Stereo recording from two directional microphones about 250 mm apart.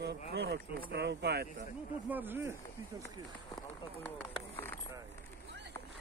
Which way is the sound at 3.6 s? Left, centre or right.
Centre.